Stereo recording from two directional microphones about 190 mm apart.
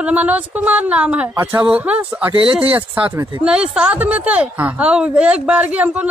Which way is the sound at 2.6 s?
25° right (ahead or behind).